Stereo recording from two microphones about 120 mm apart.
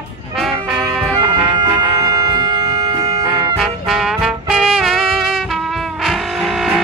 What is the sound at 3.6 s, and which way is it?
Trumpet, centre (ahead or behind).